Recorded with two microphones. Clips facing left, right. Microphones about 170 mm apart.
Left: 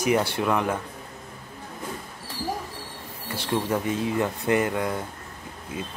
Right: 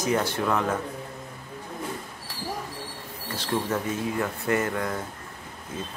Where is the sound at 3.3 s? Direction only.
10° left (ahead or behind).